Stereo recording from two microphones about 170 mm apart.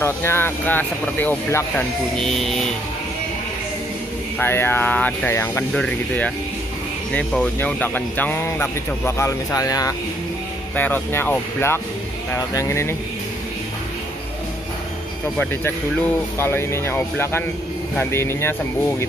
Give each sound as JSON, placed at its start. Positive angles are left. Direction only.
{"t": 0.0, "sound": "speech", "side_deg": 15}
{"t": 2.1, "sound": "vehicle", "side_deg": 0}
{"t": 4.4, "sound": "speech", "side_deg": 15}
{"t": 16.3, "sound": "speech", "side_deg": 15}